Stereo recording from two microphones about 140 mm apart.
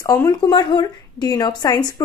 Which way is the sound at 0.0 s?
25° left (ahead or behind).